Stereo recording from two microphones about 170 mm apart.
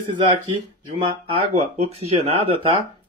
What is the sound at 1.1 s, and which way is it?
Speech, 35° right (ahead or behind).